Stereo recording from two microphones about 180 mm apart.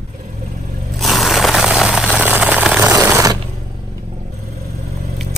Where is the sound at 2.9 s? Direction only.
15° right (ahead or behind).